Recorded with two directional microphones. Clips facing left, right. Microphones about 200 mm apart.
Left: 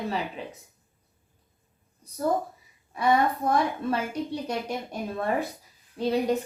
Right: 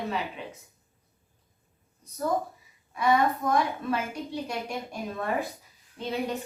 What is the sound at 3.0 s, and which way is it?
A woman's voice, 35° left (ahead or behind).